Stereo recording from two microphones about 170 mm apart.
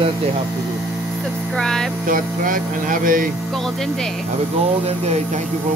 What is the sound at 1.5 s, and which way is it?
Speech, 5° left (ahead or behind).